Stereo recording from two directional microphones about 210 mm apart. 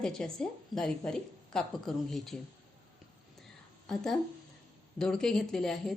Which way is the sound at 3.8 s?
Centre (ahead or behind).